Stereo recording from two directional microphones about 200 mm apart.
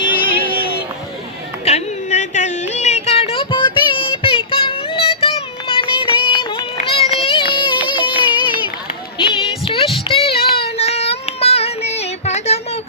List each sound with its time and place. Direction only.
0.2 s a sound: 25° left (ahead or behind)
1.6 s a sound: 35° left (ahead or behind)
7.6 s music: 25° left (ahead or behind)
9.1 s child singing: 25° left (ahead or behind)
10.3 s child singing: 50° left (ahead or behind)
10.8 s child singing: 30° left (ahead or behind)